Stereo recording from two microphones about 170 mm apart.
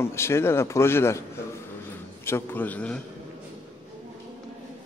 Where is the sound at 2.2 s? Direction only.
15° left (ahead or behind).